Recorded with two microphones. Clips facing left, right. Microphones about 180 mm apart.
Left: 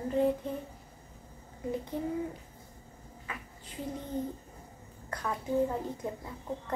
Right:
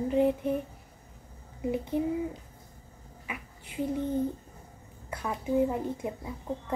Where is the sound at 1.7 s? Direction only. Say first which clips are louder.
Right 5 dB; 15° right (ahead or behind).